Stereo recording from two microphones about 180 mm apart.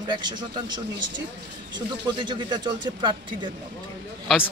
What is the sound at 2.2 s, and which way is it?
Speech, 25° right (ahead or behind).